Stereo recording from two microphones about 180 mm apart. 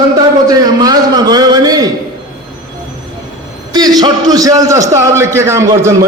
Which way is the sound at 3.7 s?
20° right (ahead or behind).